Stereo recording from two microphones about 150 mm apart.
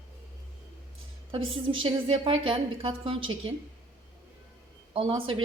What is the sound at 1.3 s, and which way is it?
A woman's voice, 35° right (ahead or behind).